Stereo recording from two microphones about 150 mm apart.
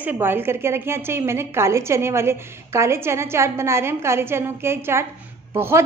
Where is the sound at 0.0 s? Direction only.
10° right (ahead or behind).